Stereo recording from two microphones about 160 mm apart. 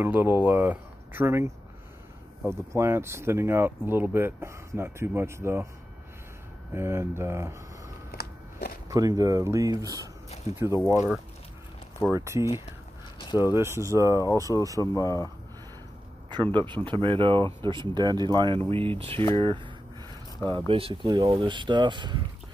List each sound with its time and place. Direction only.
0.0 s speech: 15° right (ahead or behind)
6.7 s speech: 15° right (ahead or behind)
8.1 s walk: 75° left (ahead or behind)
8.8 s speech: 20° right (ahead or behind)
12.1 s speech: 15° right (ahead or behind)
14.8 s speech: 20° left (ahead or behind)
16.3 s a sound: 30° right (ahead or behind)
16.6 s speech: 30° right (ahead or behind)